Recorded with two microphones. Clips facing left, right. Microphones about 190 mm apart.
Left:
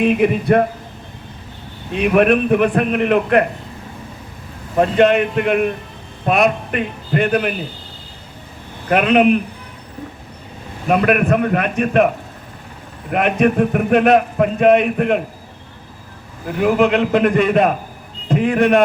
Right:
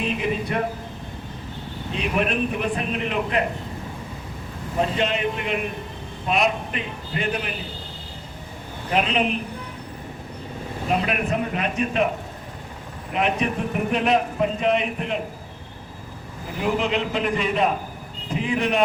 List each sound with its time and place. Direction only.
0.0 s a man's voice: 60° left (ahead or behind)
1.9 s a man's voice: 60° left (ahead or behind)
4.8 s a man's voice: 60° left (ahead or behind)
8.9 s a man's voice: 60° left (ahead or behind)
10.8 s a man's voice: 60° left (ahead or behind)
16.6 s a man's voice: 55° left (ahead or behind)